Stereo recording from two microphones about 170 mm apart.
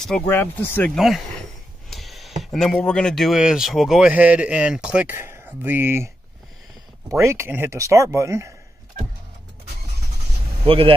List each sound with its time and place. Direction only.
0.3 s speech: 10° left (ahead or behind)
0.9 s speech: centre (ahead or behind)
7.1 s speech: 15° right (ahead or behind)
10.6 s a man's voice: 30° right (ahead or behind)